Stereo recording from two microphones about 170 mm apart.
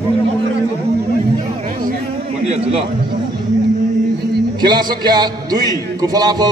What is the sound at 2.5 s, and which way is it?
Speech, 35° right (ahead or behind).